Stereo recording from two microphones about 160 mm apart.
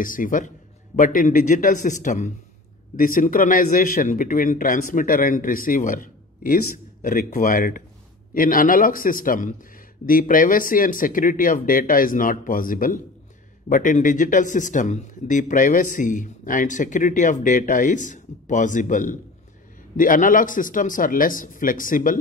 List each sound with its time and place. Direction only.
0.0 s speech: 60° left (ahead or behind)